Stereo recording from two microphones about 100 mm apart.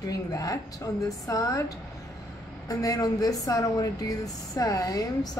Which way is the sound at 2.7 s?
35° left (ahead or behind).